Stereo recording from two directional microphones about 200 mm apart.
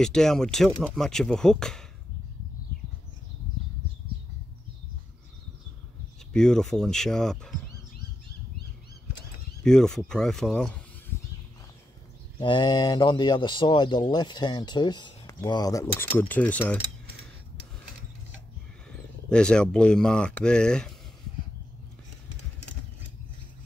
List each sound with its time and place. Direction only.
0.0 s speech: 5° left (ahead or behind)
6.3 s speech: 5° left (ahead or behind)
9.6 s speech: 5° left (ahead or behind)
12.4 s speech: 25° left (ahead or behind); by 16.8 s 10° left (ahead or behind)
18.9 s speech: 5° left (ahead or behind)